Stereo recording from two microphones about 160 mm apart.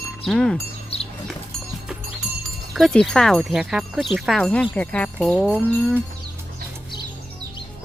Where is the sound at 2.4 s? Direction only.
Centre (ahead or behind).